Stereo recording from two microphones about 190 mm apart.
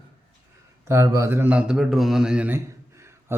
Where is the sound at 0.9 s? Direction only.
15° right (ahead or behind).